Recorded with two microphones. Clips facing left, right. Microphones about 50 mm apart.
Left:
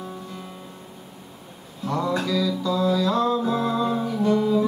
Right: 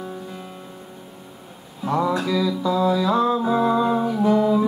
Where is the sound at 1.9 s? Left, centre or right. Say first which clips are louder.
Right 3 dB; centre.